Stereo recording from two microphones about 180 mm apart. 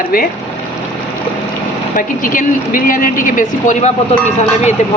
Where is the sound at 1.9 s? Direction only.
50° left (ahead or behind).